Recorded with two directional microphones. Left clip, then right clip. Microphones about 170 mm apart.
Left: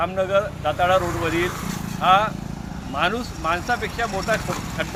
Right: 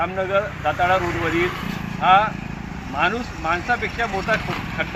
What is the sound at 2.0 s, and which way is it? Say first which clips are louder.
Speech: right 2 dB; 30° left (ahead or behind).